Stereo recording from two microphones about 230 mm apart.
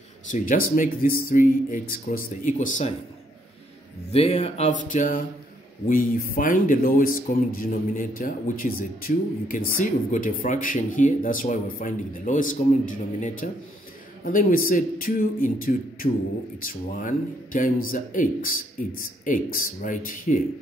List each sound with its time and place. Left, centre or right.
0.3 s speech: left
4.1 s speech: left